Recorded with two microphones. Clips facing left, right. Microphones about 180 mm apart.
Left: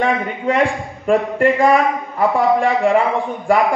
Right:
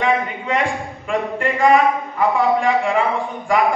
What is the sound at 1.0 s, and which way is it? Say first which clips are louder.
A man's voice: left 7 dB; 40° left (ahead or behind).